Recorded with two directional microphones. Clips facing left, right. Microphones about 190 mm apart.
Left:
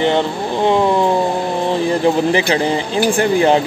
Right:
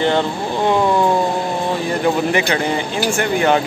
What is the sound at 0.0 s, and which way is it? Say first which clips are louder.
Speech: left 1 dB; 20° left (ahead or behind).